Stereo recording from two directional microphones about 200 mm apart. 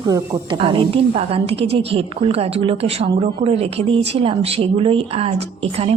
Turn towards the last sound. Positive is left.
turn(degrees=-30)  # may be behind; listen again after turning